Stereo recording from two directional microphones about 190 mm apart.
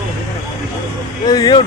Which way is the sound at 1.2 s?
20° left (ahead or behind).